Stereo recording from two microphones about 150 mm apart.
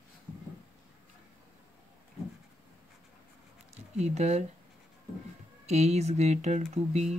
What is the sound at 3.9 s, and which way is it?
Speech, 45° right (ahead or behind).